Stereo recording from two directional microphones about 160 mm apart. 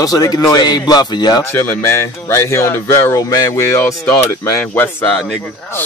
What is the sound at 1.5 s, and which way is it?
Speech, 15° left (ahead or behind).